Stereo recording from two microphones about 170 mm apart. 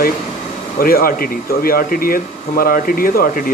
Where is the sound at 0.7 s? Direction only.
60° left (ahead or behind).